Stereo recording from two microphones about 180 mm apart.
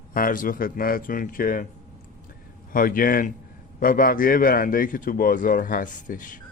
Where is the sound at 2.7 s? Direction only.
50° left (ahead or behind).